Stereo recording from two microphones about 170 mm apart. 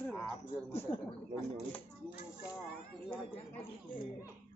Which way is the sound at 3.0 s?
30° left (ahead or behind).